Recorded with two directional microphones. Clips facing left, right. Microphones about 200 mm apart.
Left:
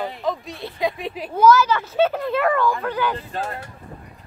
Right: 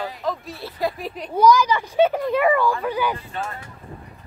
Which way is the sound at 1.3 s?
15° right (ahead or behind).